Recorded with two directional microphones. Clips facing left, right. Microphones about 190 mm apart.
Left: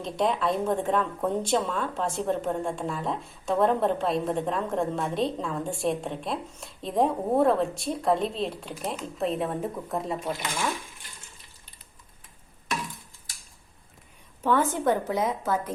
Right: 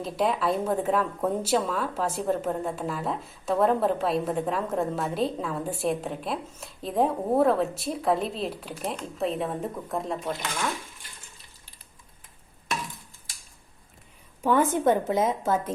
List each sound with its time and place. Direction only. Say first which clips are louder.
0.0 s a woman's voice: even; 5° right (ahead or behind); by 10.7 s 10° left (ahead or behind)
14.4 s a woman's voice: right 2 dB; 15° right (ahead or behind)